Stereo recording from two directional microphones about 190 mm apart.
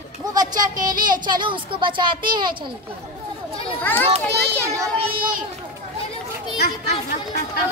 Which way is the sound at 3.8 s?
10° left (ahead or behind).